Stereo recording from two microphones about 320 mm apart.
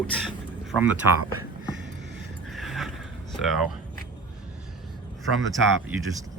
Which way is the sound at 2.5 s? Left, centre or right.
Centre.